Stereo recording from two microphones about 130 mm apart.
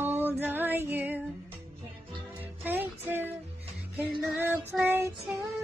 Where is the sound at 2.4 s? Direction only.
15° right (ahead or behind).